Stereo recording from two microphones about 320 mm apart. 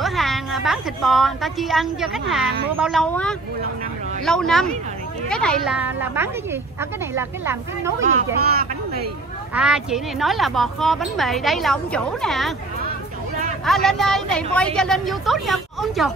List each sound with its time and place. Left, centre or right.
0.0 s a woman's voice: centre
8.0 s speech: right
9.5 s speech: centre
13.7 s speech: centre